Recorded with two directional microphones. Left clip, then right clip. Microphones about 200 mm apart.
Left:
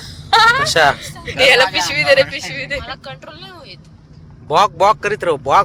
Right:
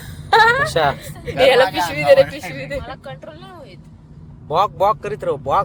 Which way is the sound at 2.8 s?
35° right (ahead or behind).